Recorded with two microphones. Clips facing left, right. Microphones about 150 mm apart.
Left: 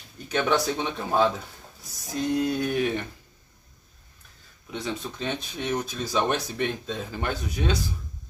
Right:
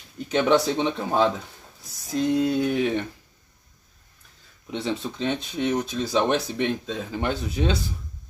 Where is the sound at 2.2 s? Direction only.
25° right (ahead or behind).